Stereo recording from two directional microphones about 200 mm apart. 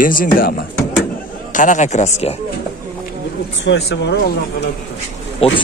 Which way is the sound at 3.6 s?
60° left (ahead or behind).